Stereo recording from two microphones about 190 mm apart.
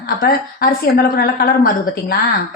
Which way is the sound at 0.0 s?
50° left (ahead or behind).